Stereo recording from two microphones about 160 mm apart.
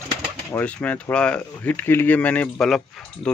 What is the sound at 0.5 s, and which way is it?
Speech, 10° left (ahead or behind).